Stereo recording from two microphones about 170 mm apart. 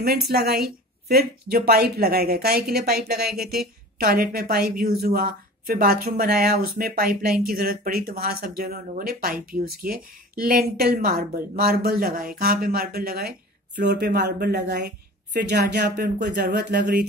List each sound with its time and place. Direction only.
0.0 s speech: 65° right (ahead or behind)
14.1 s speech: 85° right